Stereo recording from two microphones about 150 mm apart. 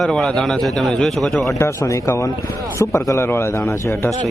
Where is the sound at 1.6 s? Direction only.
20° left (ahead or behind).